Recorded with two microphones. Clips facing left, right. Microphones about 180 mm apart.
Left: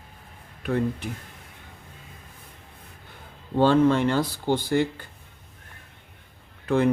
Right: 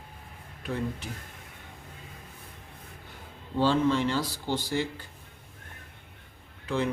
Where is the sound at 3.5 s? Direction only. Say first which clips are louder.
Left 6 dB; 55° left (ahead or behind).